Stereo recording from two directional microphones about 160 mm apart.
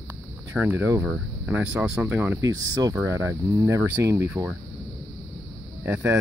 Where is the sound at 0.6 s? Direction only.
15° right (ahead or behind).